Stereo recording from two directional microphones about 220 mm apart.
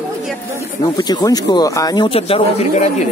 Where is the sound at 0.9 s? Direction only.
20° left (ahead or behind).